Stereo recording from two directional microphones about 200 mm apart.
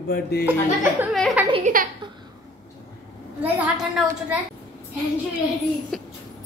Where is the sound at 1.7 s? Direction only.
40° right (ahead or behind).